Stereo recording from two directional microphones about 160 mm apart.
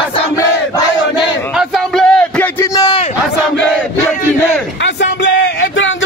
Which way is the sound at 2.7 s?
30° left (ahead or behind).